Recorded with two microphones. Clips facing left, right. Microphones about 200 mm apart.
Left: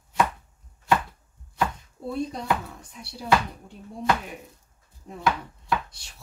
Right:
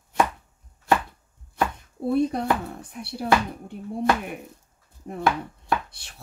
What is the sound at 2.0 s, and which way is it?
Speech, 60° right (ahead or behind).